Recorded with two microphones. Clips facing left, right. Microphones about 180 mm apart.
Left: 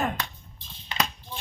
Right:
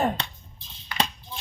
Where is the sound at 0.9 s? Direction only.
20° left (ahead or behind).